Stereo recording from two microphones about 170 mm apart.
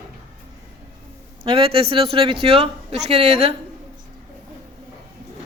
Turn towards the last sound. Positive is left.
turn(degrees=-35)  # may be behind; listen again after turning